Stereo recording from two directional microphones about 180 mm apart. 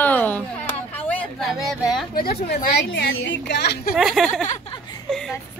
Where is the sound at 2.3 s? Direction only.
40° left (ahead or behind).